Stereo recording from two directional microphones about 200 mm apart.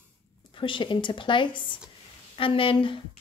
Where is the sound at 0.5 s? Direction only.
25° left (ahead or behind).